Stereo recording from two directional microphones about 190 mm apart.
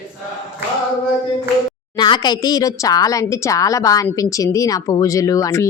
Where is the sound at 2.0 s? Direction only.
20° left (ahead or behind).